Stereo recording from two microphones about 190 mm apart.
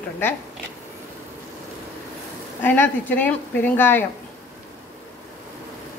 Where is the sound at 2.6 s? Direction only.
10° left (ahead or behind).